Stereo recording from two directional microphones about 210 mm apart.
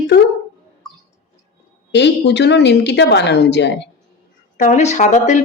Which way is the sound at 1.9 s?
55° left (ahead or behind).